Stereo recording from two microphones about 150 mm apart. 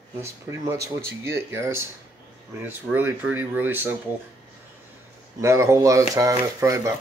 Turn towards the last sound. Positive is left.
turn(degrees=-20)  # may be behind; listen again after turning